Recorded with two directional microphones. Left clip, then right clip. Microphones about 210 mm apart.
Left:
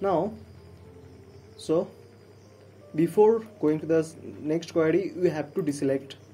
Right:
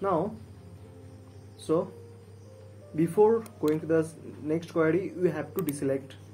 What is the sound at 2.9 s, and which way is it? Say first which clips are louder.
Speech: left 2 dB; 30° left (ahead or behind).